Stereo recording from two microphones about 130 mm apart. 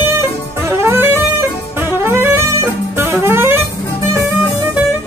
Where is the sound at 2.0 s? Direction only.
15° right (ahead or behind).